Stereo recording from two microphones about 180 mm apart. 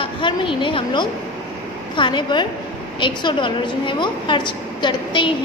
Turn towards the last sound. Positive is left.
turn(degrees=25)  # may be behind; listen again after turning